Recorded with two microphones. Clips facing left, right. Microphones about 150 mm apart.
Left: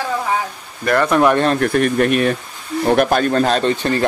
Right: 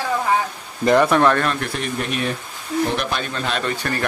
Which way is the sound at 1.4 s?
40° left (ahead or behind).